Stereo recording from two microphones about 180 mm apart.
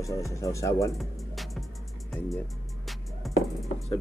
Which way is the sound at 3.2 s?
Centre (ahead or behind).